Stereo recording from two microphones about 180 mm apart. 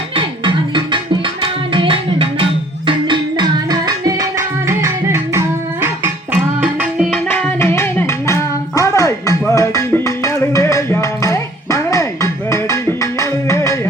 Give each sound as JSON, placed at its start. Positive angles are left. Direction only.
{"t": 0.2, "sound": "music", "side_deg": -25}
{"t": 6.6, "sound": "music", "side_deg": -5}
{"t": 7.3, "sound": "music", "side_deg": 10}